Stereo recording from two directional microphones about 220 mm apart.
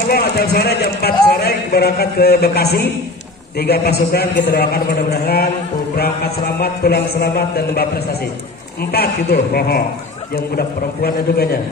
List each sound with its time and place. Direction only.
0.1 s a man's voice: 45° left (ahead or behind)